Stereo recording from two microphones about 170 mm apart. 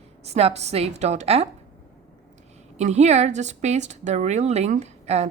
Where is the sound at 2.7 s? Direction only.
40° right (ahead or behind).